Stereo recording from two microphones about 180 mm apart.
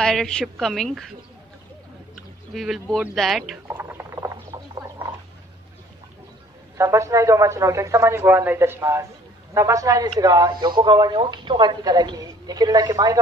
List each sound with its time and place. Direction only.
0.0 s a woman's voice: 5° left (ahead or behind)
2.5 s a woman's voice: centre (ahead or behind)
3.6 s rodents: 10° right (ahead or behind)
6.8 s speech: 15° right (ahead or behind)